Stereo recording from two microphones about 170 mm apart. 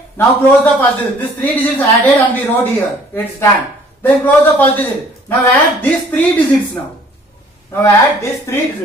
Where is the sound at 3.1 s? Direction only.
15° left (ahead or behind).